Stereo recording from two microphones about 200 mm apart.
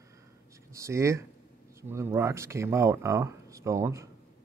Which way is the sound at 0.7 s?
15° right (ahead or behind).